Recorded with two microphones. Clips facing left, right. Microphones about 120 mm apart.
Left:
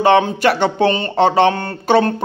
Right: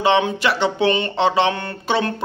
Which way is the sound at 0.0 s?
50° left (ahead or behind).